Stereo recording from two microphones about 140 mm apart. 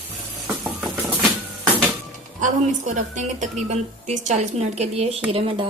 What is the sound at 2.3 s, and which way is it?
A woman's voice, 65° right (ahead or behind).